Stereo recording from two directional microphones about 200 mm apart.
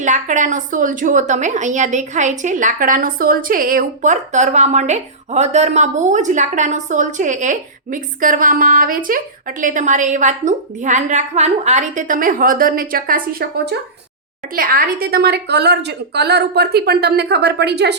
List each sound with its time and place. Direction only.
0.0 s a woman's voice: 40° right (ahead or behind)
14.5 s a woman's voice: 45° right (ahead or behind)